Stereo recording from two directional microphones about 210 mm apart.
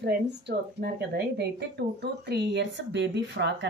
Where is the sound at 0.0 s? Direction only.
50° right (ahead or behind).